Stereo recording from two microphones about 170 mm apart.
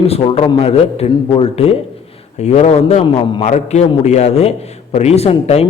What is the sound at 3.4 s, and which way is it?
A man's voice, 40° left (ahead or behind).